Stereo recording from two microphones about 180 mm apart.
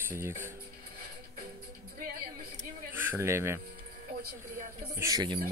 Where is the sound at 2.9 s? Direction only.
15° right (ahead or behind).